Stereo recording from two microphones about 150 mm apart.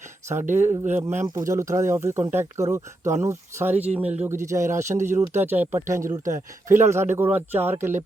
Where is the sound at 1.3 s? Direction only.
25° right (ahead or behind).